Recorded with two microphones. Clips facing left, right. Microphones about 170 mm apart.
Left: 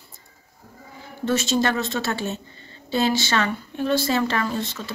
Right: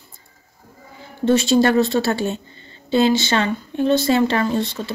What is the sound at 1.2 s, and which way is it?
Speech, 30° right (ahead or behind).